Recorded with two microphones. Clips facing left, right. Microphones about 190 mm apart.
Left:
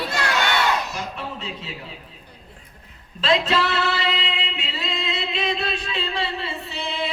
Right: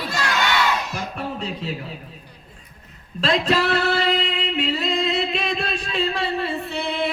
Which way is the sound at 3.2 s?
45° right (ahead or behind).